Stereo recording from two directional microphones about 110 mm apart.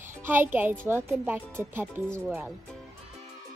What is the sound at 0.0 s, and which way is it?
A child's voice, 20° right (ahead or behind).